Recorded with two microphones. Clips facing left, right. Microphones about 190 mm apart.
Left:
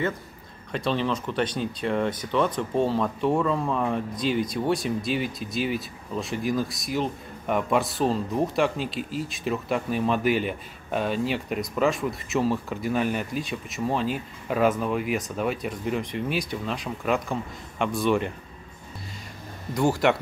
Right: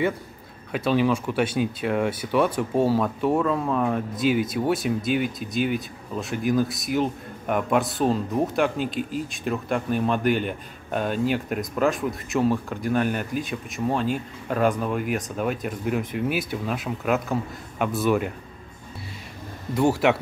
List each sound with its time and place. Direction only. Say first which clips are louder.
0.7 s speech: right 4 dB; 5° right (ahead or behind)
19.7 s speech: right 2 dB; centre (ahead or behind)